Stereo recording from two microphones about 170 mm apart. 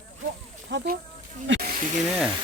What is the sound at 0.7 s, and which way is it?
Speech, 75° right (ahead or behind).